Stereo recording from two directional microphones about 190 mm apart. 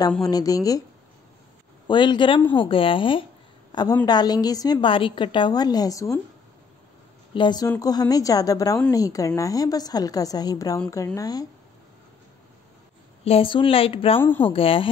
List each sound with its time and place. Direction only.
0.2 s a woman's voice: 20° left (ahead or behind)
1.9 s a woman's voice: 25° left (ahead or behind)
7.3 s a woman's voice: 20° left (ahead or behind)
13.2 s a woman's voice: 30° left (ahead or behind)